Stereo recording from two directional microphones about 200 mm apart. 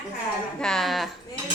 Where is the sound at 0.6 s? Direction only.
Centre (ahead or behind).